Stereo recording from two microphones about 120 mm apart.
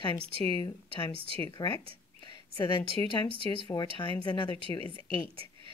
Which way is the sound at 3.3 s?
50° right (ahead or behind).